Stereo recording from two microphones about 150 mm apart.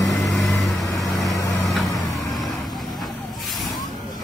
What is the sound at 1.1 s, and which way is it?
Vehicle, 25° left (ahead or behind).